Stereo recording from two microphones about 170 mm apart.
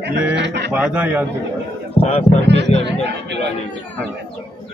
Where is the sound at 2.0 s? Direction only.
40° left (ahead or behind).